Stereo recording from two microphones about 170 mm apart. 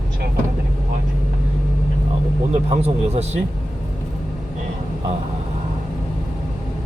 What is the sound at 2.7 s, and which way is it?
Speech, 40° right (ahead or behind).